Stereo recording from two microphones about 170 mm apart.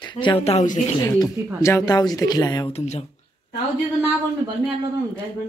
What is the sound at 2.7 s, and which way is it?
Speech, 40° left (ahead or behind).